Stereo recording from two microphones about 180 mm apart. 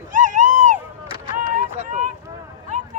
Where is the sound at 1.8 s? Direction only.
45° right (ahead or behind).